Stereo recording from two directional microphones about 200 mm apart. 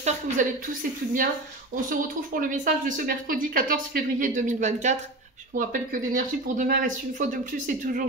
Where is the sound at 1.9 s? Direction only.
45° right (ahead or behind).